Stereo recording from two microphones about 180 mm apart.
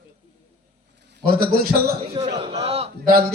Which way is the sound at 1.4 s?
55° right (ahead or behind).